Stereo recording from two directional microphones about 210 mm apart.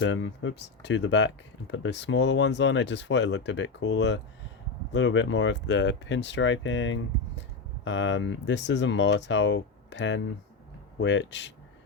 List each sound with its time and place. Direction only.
0.0 s speech: 60° left (ahead or behind)